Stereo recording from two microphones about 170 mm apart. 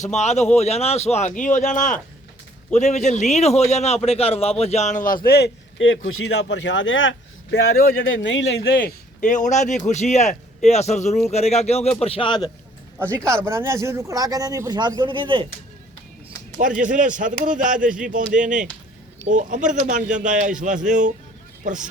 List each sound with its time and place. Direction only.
0.0 s a man's voice: 40° left (ahead or behind); by 9.0 s 80° left
9.2 s a man's voice: 45° left (ahead or behind); by 12.5 s 30° left (ahead or behind)
13.1 s speech: 15° right (ahead or behind)
16.8 s speech: 50° right (ahead or behind)